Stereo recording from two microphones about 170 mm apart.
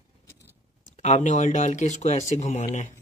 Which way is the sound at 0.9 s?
45° left (ahead or behind).